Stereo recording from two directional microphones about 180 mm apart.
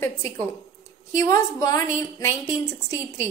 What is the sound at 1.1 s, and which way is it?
A woman's voice, 20° left (ahead or behind).